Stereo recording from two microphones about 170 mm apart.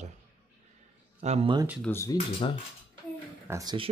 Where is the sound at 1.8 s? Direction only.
15° left (ahead or behind).